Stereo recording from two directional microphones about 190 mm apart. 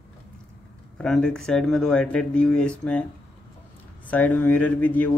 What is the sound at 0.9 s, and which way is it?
Speech, 5° left (ahead or behind).